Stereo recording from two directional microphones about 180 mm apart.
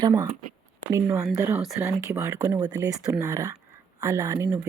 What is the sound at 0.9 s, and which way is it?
Speech, 15° right (ahead or behind).